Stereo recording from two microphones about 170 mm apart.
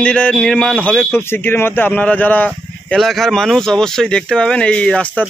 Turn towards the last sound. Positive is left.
turn(degrees=5)  # may be behind; listen again after turning